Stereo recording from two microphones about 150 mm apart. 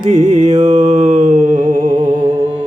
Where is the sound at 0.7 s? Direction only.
65° right (ahead or behind).